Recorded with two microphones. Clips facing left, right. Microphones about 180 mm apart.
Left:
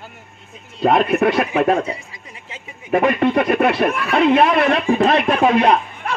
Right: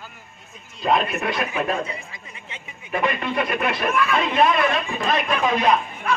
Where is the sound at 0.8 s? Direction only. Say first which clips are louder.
Left 7 dB; 60° left (ahead or behind).